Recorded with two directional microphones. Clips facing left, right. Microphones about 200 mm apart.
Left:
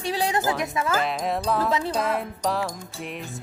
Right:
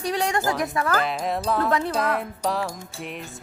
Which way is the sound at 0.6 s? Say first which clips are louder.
Right 1 dB; 20° left (ahead or behind).